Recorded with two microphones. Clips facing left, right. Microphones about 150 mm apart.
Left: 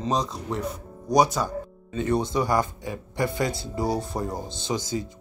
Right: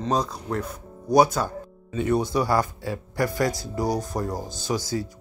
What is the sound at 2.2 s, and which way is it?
A man's voice, 20° left (ahead or behind).